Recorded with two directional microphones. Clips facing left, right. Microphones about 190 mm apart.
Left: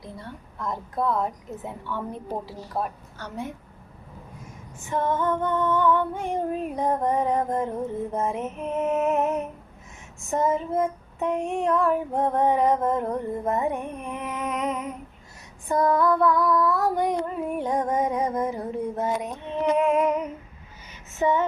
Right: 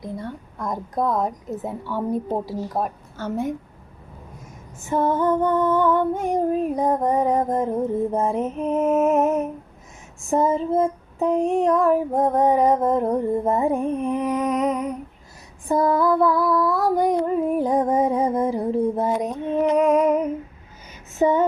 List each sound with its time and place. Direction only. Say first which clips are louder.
0.6 s female singing: right 3 dB; 40° right (ahead or behind)
2.3 s a woman's voice: right 6 dB; 40° right (ahead or behind)
4.9 s female singing: right 5 dB; 40° right (ahead or behind)
10.2 s female singing: right 4 dB; 30° right (ahead or behind)
16.4 s a sound: right 2 dB; 10° right (ahead or behind)
16.7 s female singing: right 4 dB; 35° right (ahead or behind)